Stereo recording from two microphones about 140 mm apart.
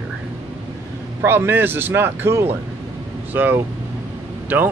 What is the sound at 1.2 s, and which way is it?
Speech, 15° right (ahead or behind).